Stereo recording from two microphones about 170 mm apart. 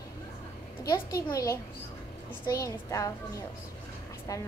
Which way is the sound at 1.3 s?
20° left (ahead or behind).